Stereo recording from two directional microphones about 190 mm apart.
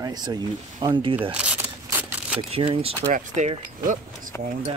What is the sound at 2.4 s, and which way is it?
Speech, 30° right (ahead or behind).